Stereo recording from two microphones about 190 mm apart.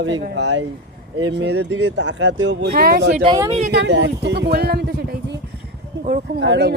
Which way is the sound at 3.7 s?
65° right (ahead or behind).